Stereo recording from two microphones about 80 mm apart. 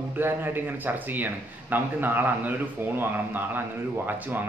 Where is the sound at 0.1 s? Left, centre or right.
Right.